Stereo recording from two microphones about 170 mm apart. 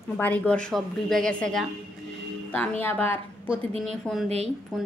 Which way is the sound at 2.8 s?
10° left (ahead or behind).